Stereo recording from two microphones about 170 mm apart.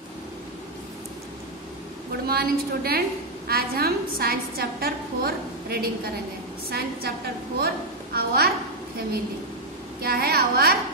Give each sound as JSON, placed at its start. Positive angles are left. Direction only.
{"t": 2.2, "sound": "a woman's voice", "side_deg": -65}
{"t": 10.0, "sound": "a woman's voice", "side_deg": -65}